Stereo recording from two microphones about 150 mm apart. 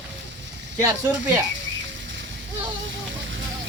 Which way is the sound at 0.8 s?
20° right (ahead or behind).